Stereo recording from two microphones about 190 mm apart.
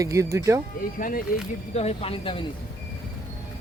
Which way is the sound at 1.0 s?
45° left (ahead or behind).